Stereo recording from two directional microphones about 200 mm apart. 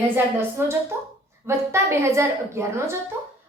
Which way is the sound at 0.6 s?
10° right (ahead or behind).